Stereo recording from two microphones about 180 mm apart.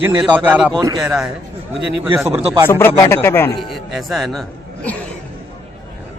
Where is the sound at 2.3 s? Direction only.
35° right (ahead or behind).